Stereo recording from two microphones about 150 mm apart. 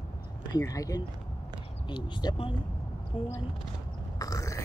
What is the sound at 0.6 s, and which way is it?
Speech, 25° left (ahead or behind).